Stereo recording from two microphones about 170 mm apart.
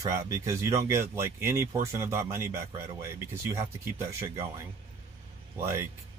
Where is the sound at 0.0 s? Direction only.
15° right (ahead or behind).